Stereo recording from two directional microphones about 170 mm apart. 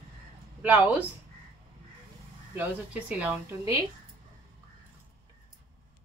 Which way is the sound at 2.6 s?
10° right (ahead or behind).